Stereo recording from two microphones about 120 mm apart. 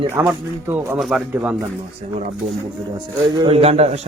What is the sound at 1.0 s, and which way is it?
Speech, 5° right (ahead or behind).